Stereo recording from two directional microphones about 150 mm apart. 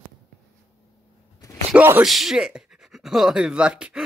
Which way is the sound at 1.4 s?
25° left (ahead or behind).